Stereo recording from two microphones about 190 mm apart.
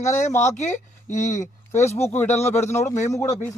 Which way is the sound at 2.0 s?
10° left (ahead or behind).